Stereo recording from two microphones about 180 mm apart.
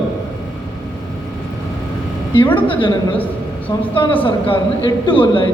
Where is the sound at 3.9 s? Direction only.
30° left (ahead or behind).